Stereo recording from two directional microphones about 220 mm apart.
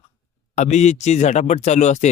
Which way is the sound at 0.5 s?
30° left (ahead or behind).